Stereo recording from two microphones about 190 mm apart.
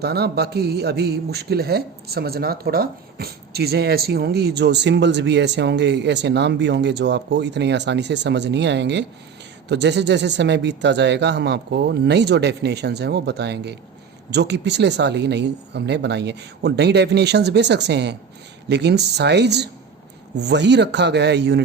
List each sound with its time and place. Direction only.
0.0 s a man's voice: 60° right (ahead or behind)